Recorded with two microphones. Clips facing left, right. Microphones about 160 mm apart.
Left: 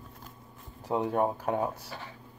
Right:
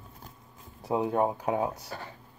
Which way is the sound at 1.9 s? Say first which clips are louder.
Right 3 dB; 45° right (ahead or behind).